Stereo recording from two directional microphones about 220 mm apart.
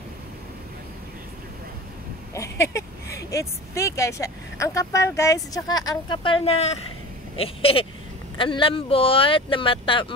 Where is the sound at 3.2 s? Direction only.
15° left (ahead or behind).